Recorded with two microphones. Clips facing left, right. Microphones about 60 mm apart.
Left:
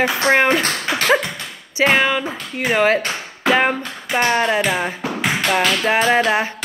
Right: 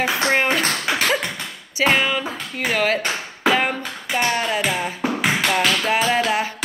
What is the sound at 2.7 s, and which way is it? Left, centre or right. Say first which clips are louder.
Music: left 5 dB; left.